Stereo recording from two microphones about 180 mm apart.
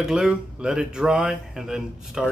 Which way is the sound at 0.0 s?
5° right (ahead or behind).